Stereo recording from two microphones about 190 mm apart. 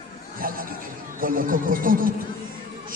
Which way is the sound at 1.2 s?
45° right (ahead or behind).